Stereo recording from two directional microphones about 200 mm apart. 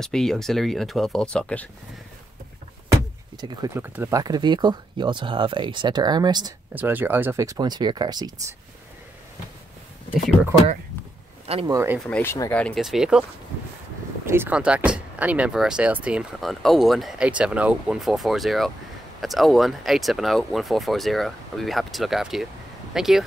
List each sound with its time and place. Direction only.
0.0 s speech: centre (ahead or behind)
2.9 s speech: 20° right (ahead or behind)
6.7 s speech: 10° right (ahead or behind)
10.1 s speech: centre (ahead or behind)
11.6 s speech: 15° right (ahead or behind)
12.1 s speech: 10° left (ahead or behind)
14.2 s speech: 10° right (ahead or behind)